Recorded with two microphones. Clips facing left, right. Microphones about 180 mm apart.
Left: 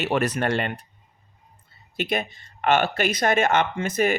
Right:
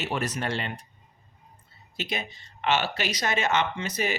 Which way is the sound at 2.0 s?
55° left (ahead or behind).